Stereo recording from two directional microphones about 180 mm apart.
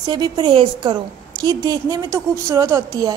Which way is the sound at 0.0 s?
25° right (ahead or behind).